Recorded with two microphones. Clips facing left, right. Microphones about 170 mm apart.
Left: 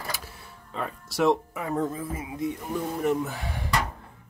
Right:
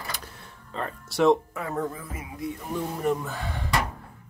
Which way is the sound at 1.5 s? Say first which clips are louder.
Left 2 dB; 15° left (ahead or behind).